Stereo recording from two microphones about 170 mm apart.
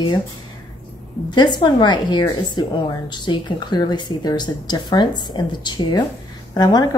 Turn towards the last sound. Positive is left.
turn(degrees=25)  # may be behind; listen again after turning